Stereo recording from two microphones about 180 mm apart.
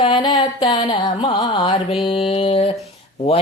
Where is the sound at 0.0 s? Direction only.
25° left (ahead or behind).